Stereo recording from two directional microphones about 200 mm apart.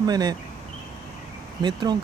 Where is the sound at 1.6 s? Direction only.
20° right (ahead or behind).